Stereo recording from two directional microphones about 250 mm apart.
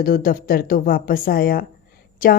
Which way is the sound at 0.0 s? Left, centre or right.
Left.